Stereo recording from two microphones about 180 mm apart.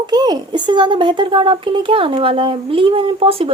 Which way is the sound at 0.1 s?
20° right (ahead or behind).